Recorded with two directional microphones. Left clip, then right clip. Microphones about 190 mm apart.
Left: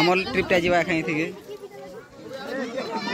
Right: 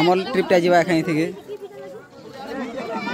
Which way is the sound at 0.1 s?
25° right (ahead or behind).